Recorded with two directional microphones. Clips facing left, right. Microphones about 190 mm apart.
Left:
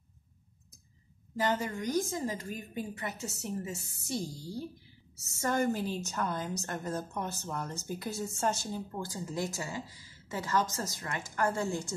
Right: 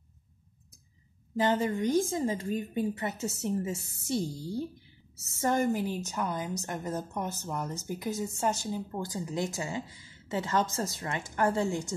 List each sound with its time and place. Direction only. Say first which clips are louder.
1.3 s a woman's voice: right 4 dB; 20° right (ahead or behind)
5.4 s a woman's voice: right 3 dB; 20° right (ahead or behind)